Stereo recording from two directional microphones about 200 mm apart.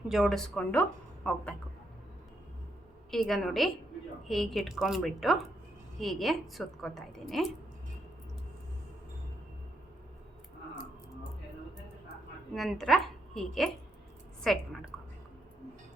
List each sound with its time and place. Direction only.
0.1 s speech: centre (ahead or behind)
3.1 s speech: centre (ahead or behind)
12.5 s speech: centre (ahead or behind)